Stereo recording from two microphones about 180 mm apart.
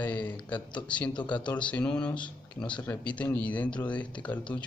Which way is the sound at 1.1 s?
25° left (ahead or behind).